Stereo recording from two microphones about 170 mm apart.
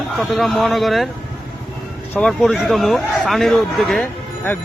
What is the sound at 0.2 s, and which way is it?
Speech, centre (ahead or behind).